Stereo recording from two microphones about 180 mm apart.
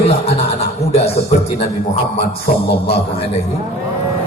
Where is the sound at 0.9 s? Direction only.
35° left (ahead or behind).